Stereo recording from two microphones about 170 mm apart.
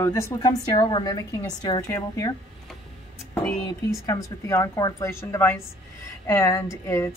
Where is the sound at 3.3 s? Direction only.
10° left (ahead or behind).